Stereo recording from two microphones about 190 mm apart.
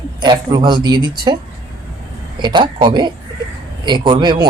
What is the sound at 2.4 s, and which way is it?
Speech, 25° right (ahead or behind).